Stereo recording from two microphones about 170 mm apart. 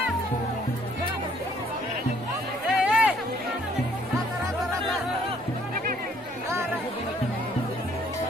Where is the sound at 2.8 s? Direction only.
10° right (ahead or behind).